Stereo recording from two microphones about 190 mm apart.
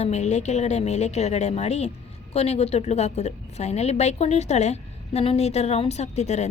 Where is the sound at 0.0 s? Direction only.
35° left (ahead or behind).